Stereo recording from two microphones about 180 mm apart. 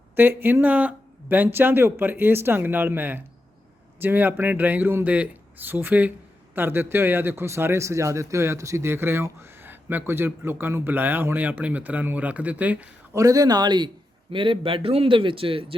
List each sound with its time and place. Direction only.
0.2 s a man's voice: 10° right (ahead or behind)
13.2 s a man's voice: 20° right (ahead or behind)